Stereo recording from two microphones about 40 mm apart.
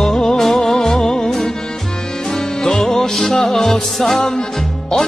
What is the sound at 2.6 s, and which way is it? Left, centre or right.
Music, centre.